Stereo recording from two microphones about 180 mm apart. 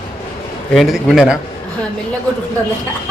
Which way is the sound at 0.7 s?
Centre (ahead or behind).